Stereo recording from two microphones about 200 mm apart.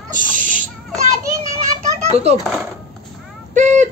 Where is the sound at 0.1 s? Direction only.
40° right (ahead or behind).